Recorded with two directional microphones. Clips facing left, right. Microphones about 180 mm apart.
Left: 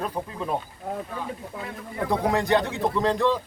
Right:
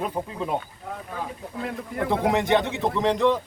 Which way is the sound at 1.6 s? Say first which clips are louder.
Right 5 dB; 55° right (ahead or behind).